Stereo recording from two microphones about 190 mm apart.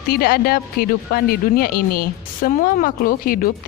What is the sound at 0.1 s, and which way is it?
Speech, 55° left (ahead or behind).